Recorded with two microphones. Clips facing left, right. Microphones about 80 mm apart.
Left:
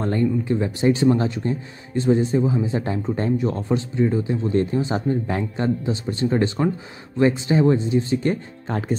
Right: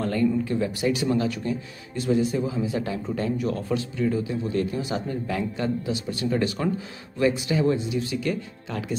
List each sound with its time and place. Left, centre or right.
0.0 s speech: left